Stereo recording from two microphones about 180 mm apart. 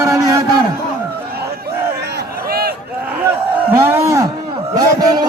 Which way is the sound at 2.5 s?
60° right (ahead or behind).